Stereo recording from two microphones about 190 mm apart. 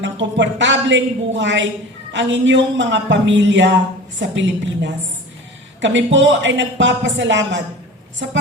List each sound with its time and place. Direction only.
0.0 s a man's voice: 70° right (ahead or behind)